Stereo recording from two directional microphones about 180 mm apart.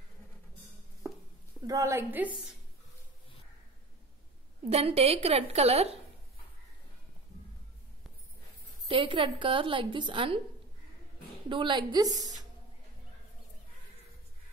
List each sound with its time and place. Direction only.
1.7 s a woman's voice: 15° right (ahead or behind)
4.6 s a woman's voice: 35° right (ahead or behind)
8.8 s a woman's voice: 30° right (ahead or behind)
11.4 s a woman's voice: 25° right (ahead or behind)